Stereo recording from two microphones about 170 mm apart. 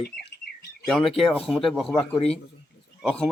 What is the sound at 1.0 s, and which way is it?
Speech, 35° left (ahead or behind).